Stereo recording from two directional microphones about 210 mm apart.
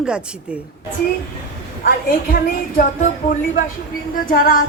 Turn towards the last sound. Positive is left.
turn(degrees=40)  # may be behind; listen again after turning